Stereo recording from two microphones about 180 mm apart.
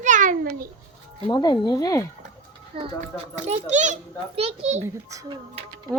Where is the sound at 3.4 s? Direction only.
40° right (ahead or behind).